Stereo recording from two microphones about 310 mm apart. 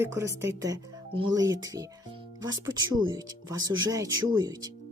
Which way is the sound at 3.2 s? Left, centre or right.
Centre.